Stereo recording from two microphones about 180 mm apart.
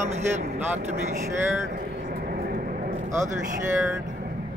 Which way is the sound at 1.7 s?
55° right (ahead or behind).